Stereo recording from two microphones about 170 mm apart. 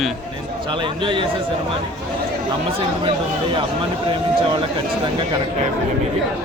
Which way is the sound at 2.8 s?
30° right (ahead or behind).